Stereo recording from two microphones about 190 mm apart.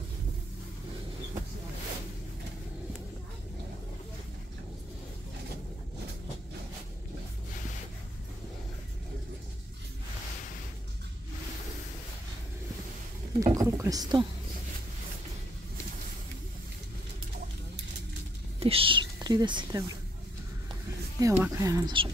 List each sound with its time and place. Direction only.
13.4 s speech: 15° right (ahead or behind)
18.6 s speech: 30° right (ahead or behind)
21.2 s speech: 15° right (ahead or behind)